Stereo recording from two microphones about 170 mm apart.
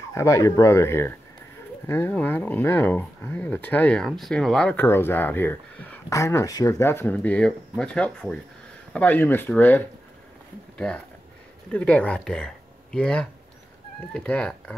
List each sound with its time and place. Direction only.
0.1 s speech: 20° left (ahead or behind)